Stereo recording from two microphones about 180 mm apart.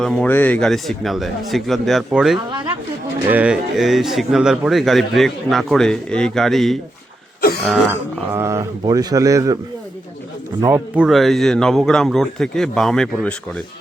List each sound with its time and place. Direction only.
0.0 s a man's voice: 5° left (ahead or behind)
2.5 s speech: 25° right (ahead or behind)
3.2 s a man's voice: 5° right (ahead or behind)
7.9 s speech: 10° right (ahead or behind)
10.6 s speech: 20° right (ahead or behind)
10.9 s a man's voice: 5° right (ahead or behind)